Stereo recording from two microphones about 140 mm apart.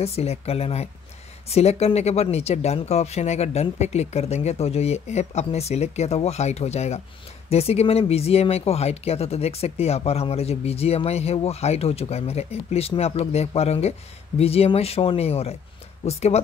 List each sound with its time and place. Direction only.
0.0 s speech: 50° left (ahead or behind)